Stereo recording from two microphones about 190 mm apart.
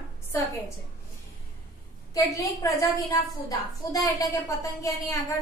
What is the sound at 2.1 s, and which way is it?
A woman's voice, 15° left (ahead or behind).